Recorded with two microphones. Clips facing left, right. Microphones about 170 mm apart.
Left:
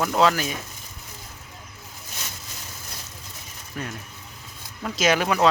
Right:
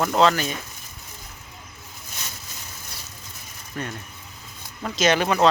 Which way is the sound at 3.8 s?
5° left (ahead or behind).